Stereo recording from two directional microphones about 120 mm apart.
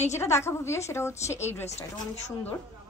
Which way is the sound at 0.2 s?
20° left (ahead or behind).